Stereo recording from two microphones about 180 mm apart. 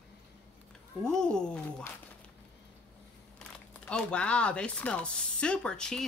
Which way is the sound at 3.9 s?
5° left (ahead or behind).